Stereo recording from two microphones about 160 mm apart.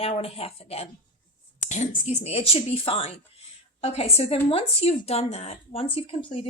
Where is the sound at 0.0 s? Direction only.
40° left (ahead or behind).